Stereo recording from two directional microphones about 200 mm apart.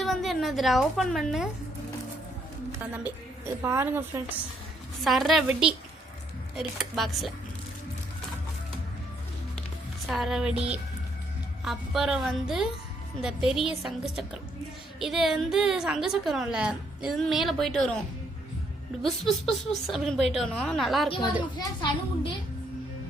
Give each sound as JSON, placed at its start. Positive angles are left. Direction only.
{"t": 0.0, "sound": "a woman's voice", "side_deg": 0}
{"t": 2.9, "sound": "a woman's voice", "side_deg": -10}
{"t": 5.0, "sound": "a woman's voice", "side_deg": 0}
{"t": 10.1, "sound": "a woman's voice", "side_deg": 0}
{"t": 11.6, "sound": "a woman's voice", "side_deg": 0}
{"t": 19.0, "sound": "a woman's voice", "side_deg": 0}
{"t": 21.6, "sound": "a child's voice", "side_deg": 20}